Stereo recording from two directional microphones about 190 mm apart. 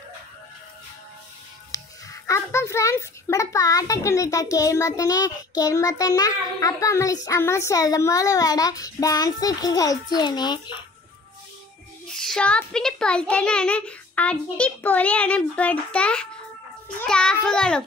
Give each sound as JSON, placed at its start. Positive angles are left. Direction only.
{"t": 1.7, "sound": "music", "side_deg": 20}
{"t": 2.2, "sound": "a child's voice", "side_deg": 15}
{"t": 12.1, "sound": "a child's voice", "side_deg": 5}